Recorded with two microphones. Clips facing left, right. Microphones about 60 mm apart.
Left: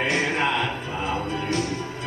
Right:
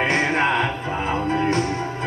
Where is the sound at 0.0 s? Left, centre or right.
Right.